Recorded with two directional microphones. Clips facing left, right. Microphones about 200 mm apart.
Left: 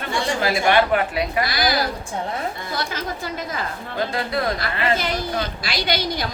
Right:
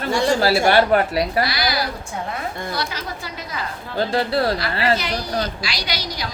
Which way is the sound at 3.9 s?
30° right (ahead or behind).